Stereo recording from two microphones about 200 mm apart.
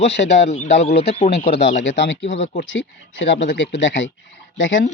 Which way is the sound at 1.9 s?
65° left (ahead or behind).